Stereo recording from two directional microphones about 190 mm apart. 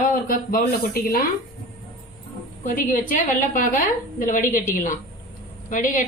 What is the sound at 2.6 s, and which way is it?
A woman's voice, 45° left (ahead or behind).